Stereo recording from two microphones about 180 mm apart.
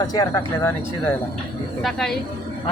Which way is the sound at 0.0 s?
20° left (ahead or behind).